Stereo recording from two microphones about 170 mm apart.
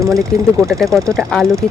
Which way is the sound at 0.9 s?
Centre (ahead or behind).